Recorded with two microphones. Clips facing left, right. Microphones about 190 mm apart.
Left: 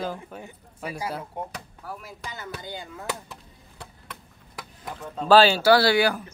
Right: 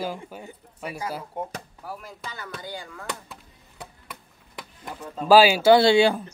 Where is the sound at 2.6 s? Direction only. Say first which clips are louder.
Even; 20° left (ahead or behind).